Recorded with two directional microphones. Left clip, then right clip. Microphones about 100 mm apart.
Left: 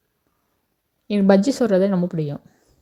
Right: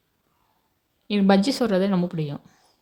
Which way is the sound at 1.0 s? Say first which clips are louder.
Left 4 dB; 50° left (ahead or behind).